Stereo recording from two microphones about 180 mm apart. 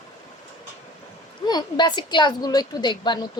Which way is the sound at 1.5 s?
25° left (ahead or behind).